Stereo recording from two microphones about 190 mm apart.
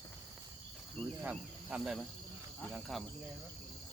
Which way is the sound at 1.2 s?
5° right (ahead or behind).